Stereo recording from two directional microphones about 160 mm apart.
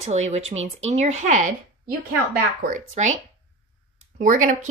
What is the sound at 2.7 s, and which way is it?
Speech, 45° right (ahead or behind).